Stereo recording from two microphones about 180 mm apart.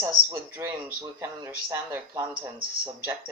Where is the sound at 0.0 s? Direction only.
15° right (ahead or behind).